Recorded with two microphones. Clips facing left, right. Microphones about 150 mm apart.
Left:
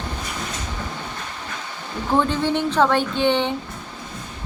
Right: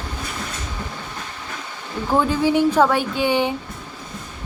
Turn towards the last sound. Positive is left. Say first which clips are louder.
# even
turn(degrees=-10)  # may be behind; listen again after turning